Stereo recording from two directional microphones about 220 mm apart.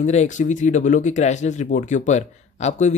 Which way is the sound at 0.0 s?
30° left (ahead or behind).